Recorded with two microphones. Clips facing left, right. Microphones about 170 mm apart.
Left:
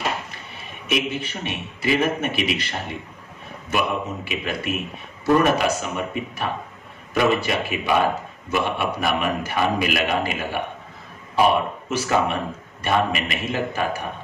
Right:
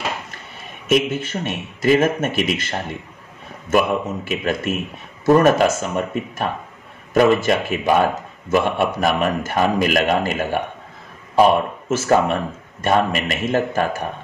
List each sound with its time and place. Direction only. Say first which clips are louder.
0.8 s a man's voice: right 6 dB; 45° right (ahead or behind)
3.7 s a man's voice: right 6 dB; 45° right (ahead or behind)